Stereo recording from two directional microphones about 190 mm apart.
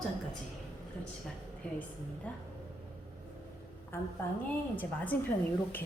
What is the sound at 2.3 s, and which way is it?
Speech, 10° left (ahead or behind).